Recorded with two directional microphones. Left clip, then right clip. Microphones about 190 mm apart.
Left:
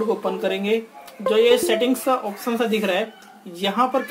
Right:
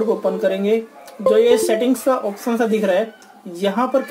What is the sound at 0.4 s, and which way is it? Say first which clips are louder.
Speech: right 4 dB; 20° right (ahead or behind).